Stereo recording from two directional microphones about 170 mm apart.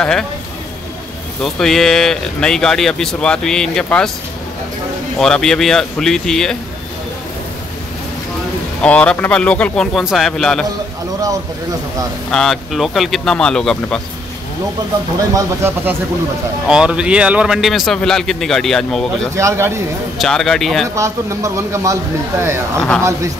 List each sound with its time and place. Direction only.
1.4 s a man's voice: centre (ahead or behind)
5.2 s a man's voice: 5° left (ahead or behind)
8.8 s a man's voice: 5° left (ahead or behind)
12.3 s a man's voice: centre (ahead or behind)
15.3 s a man's voice: 15° right (ahead or behind); by 19.3 s 5° left (ahead or behind)
19.3 s a man's voice: 15° right (ahead or behind)
20.2 s a man's voice: centre (ahead or behind)
20.9 s a man's voice: 15° right (ahead or behind)
22.8 s speech: 5° left (ahead or behind)